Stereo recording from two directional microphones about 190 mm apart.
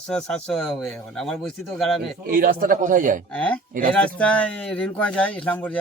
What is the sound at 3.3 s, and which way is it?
Speech, 5° left (ahead or behind).